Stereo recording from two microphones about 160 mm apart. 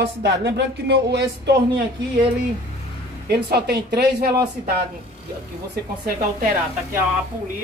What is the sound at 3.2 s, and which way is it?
Speech, 85° right.